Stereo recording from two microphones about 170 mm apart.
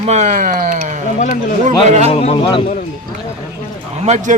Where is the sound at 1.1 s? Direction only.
50° left (ahead or behind).